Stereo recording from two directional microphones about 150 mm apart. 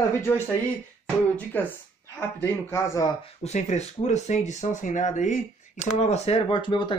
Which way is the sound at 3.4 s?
50° left (ahead or behind).